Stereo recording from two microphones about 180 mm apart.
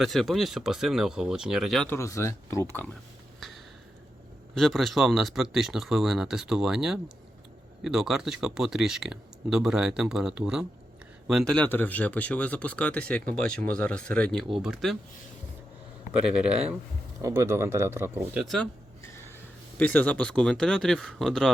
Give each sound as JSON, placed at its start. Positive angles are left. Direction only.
{"t": 0.0, "sound": "speech", "side_deg": 0}
{"t": 2.0, "sound": "speech", "side_deg": 15}
{"t": 4.5, "sound": "speech", "side_deg": 0}
{"t": 16.2, "sound": "speech", "side_deg": -5}
{"t": 17.2, "sound": "speech", "side_deg": -15}
{"t": 18.4, "sound": "speech", "side_deg": 5}
{"t": 19.0, "sound": "a sound", "side_deg": 15}
{"t": 19.8, "sound": "speech", "side_deg": 10}